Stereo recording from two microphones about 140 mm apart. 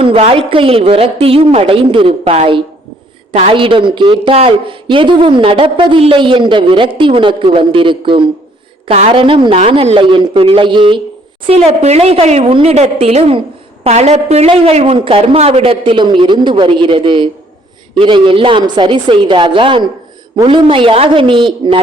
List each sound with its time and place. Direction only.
0.0 s a woman's voice: 40° right (ahead or behind)
8.9 s speech: 45° right (ahead or behind)
11.4 s a woman's voice: 45° right (ahead or behind)